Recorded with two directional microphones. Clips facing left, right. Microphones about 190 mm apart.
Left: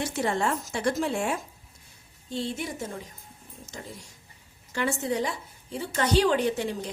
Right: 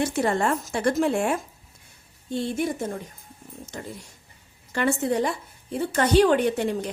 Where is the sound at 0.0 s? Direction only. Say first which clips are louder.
Right 4 dB; 55° right (ahead or behind).